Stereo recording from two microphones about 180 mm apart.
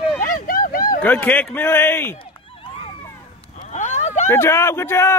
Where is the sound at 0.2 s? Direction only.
50° left (ahead or behind).